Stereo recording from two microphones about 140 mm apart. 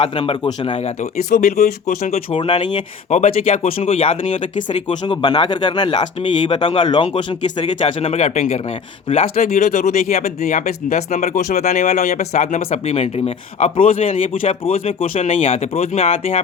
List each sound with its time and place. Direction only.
0.0 s speech: 40° left (ahead or behind)
1.3 s speech: 75° left (ahead or behind); by 2.6 s 40° left (ahead or behind)
2.7 s speech: 55° left (ahead or behind)
4.9 s speech: 35° left (ahead or behind)
7.6 s speech: 50° left (ahead or behind)